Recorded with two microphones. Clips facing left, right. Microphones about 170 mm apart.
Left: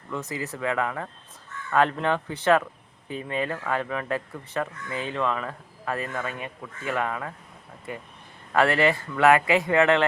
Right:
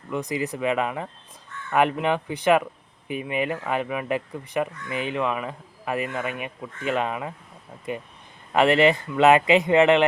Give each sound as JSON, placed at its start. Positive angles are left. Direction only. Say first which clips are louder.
{"t": 0.1, "sound": "speech", "louder": "right 5 dB", "side_deg": -15}
{"t": 8.5, "sound": "speech", "louder": "right 3 dB", "side_deg": -20}